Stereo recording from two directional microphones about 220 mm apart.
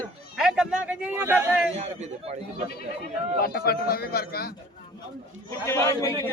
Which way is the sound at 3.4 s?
45° left (ahead or behind).